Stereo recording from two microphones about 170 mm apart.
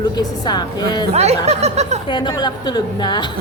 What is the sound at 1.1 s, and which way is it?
Speech, 40° right (ahead or behind).